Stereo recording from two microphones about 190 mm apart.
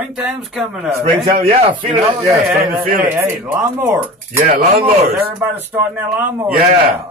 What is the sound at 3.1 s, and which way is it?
A man's voice, 10° right (ahead or behind).